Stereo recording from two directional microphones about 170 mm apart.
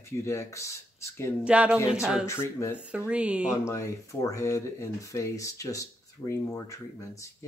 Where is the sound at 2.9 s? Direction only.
5° right (ahead or behind).